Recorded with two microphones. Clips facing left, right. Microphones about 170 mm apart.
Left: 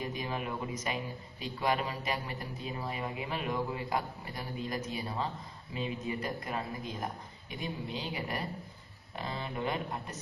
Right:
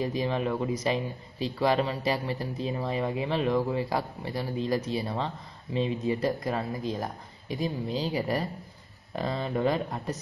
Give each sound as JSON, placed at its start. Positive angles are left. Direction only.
{"t": 0.0, "sound": "speech", "side_deg": -30}